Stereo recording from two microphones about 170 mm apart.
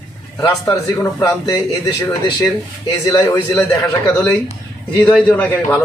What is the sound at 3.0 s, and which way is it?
Speech, 20° left (ahead or behind).